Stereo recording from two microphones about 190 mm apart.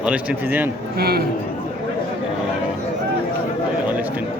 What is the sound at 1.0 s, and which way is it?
Speech, 55° right (ahead or behind).